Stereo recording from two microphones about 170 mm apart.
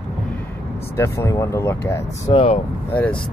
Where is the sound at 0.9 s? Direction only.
15° left (ahead or behind).